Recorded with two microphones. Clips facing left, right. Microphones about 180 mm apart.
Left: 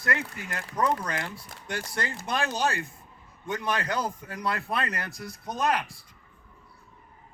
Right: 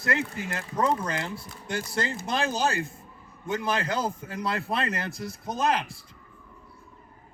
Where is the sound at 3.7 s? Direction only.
25° right (ahead or behind).